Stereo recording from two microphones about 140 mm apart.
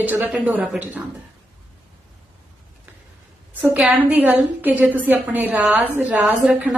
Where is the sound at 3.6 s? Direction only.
10° right (ahead or behind).